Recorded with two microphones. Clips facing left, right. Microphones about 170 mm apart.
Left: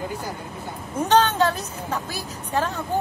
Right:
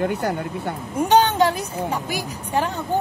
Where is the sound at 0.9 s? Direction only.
10° right (ahead or behind).